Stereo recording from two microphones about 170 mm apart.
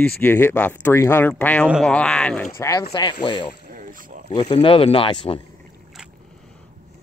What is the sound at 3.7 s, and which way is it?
Boat, 55° right (ahead or behind).